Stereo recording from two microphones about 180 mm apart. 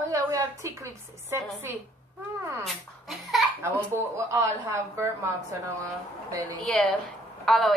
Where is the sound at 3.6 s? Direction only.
15° right (ahead or behind).